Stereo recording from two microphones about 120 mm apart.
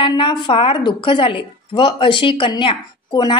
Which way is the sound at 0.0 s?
45° left (ahead or behind).